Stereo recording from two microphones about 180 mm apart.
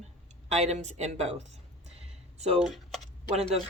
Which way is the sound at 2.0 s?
35° right (ahead or behind).